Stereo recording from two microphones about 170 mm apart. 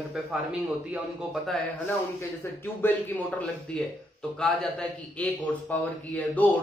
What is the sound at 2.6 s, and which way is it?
A man's voice, 10° left (ahead or behind).